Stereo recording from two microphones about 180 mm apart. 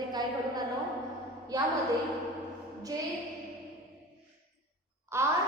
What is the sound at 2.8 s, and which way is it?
Speech, 20° right (ahead or behind).